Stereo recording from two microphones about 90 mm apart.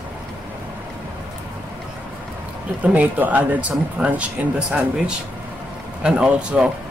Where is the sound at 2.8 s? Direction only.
15° right (ahead or behind).